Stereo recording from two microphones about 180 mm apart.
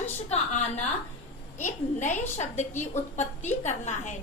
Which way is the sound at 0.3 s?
35° left (ahead or behind).